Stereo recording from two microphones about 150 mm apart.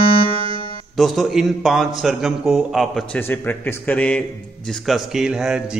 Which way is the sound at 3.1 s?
15° left (ahead or behind).